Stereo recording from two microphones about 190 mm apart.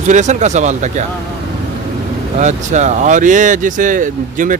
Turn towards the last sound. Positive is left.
turn(degrees=-45)  # may be behind; listen again after turning